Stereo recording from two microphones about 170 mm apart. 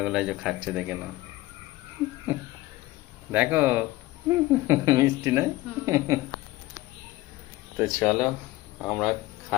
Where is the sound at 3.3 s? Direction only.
10° right (ahead or behind).